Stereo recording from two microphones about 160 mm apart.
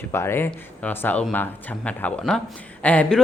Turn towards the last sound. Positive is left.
turn(degrees=10)  # may be behind; listen again after turning